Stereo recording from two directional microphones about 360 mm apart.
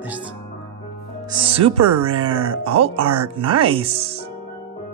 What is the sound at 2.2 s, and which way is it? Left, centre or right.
Speech, centre.